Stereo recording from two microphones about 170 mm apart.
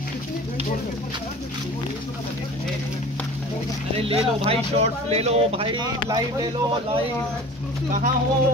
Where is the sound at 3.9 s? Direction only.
35° right (ahead or behind).